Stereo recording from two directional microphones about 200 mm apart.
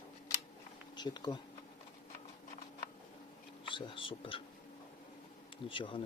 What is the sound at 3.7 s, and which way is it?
Speech, 25° left (ahead or behind).